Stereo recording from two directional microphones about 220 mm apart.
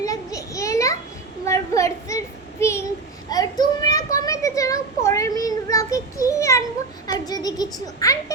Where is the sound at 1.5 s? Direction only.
15° left (ahead or behind).